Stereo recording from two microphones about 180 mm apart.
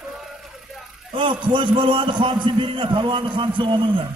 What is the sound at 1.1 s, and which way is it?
A man's voice, 25° right (ahead or behind).